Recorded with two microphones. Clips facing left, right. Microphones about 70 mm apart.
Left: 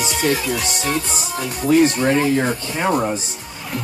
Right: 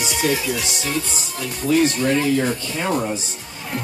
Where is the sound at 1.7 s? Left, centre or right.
Left.